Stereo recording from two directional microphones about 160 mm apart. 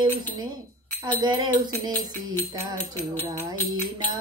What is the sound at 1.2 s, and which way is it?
Music, 30° right (ahead or behind).